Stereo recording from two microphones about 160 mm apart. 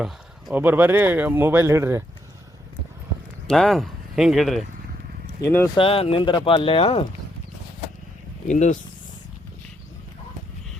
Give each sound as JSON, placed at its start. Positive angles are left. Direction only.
{"t": 0.0, "sound": "speech", "side_deg": -5}
{"t": 3.4, "sound": "speech", "side_deg": 0}
{"t": 5.4, "sound": "speech", "side_deg": 15}
{"t": 5.7, "sound": "speech", "side_deg": 35}
{"t": 8.4, "sound": "speech", "side_deg": 50}